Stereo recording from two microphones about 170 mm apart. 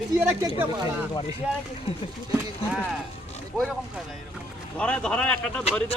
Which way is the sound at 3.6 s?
5° right (ahead or behind).